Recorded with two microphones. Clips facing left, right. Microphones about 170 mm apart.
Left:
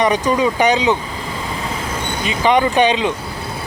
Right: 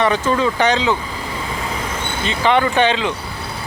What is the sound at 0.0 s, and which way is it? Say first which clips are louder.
Speech: left 1 dB; 15° left (ahead or behind).